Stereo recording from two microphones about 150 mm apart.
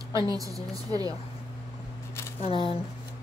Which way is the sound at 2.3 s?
40° left (ahead or behind).